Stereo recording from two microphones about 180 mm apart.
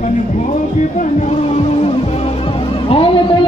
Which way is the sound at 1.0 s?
40° left (ahead or behind).